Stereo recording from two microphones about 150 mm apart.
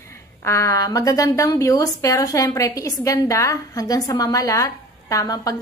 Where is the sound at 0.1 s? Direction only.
20° left (ahead or behind).